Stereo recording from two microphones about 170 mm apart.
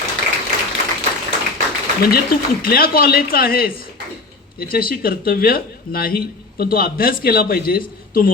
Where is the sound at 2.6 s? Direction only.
60° left (ahead or behind).